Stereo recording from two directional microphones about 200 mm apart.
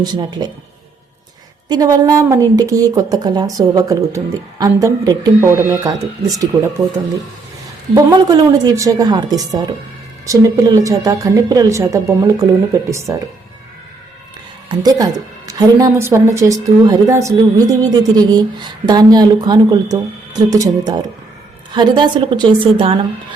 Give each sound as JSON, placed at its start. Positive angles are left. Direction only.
{"t": 0.0, "sound": "a woman's voice", "side_deg": -20}
{"t": 1.7, "sound": "speech", "side_deg": -20}
{"t": 7.9, "sound": "a woman's voice", "side_deg": -20}
{"t": 14.7, "sound": "a woman's voice", "side_deg": -20}